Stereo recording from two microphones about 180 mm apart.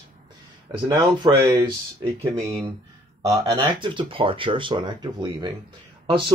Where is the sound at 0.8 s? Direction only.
25° right (ahead or behind).